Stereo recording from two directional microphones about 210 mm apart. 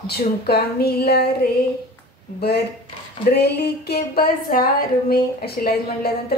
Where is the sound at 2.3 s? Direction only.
50° left (ahead or behind).